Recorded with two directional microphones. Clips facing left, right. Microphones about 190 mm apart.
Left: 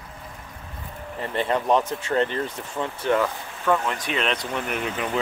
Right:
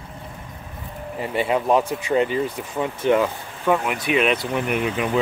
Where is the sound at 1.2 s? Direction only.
10° right (ahead or behind).